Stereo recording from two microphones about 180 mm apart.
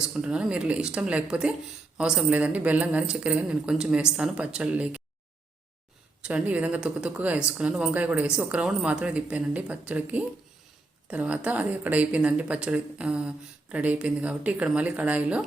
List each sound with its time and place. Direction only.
0.1 s speech: 5° right (ahead or behind)
6.2 s a woman's voice: 5° right (ahead or behind)